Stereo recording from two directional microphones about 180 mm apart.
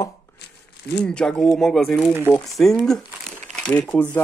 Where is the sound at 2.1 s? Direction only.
10° right (ahead or behind).